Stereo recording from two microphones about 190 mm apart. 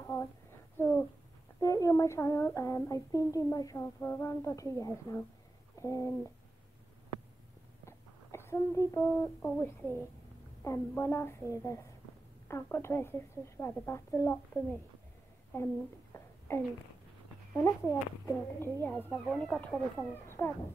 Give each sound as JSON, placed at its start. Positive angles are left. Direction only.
{"t": 0.0, "sound": "a sound", "side_deg": 10}
{"t": 0.7, "sound": "speech", "side_deg": 10}
{"t": 1.6, "sound": "child singing", "side_deg": 15}
{"t": 7.8, "sound": "speech", "side_deg": 15}
{"t": 10.6, "sound": "child singing", "side_deg": 15}
{"t": 15.5, "sound": "a sound", "side_deg": 15}
{"t": 17.6, "sound": "child singing", "side_deg": 15}